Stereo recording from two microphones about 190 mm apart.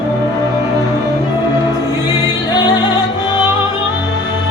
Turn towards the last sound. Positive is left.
turn(degrees=20)  # may be behind; listen again after turning